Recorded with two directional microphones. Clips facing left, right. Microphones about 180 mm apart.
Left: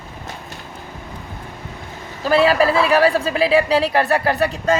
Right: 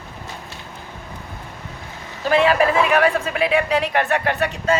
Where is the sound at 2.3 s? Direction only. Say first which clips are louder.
Left 1 dB; 35° left (ahead or behind).